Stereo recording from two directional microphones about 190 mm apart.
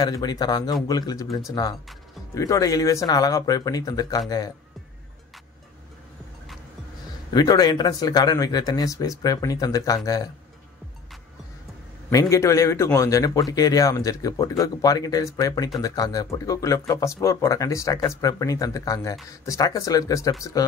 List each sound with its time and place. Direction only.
0.0 s speech: 20° left (ahead or behind)
7.3 s speech: 20° left (ahead or behind)
12.1 s speech: 15° left (ahead or behind)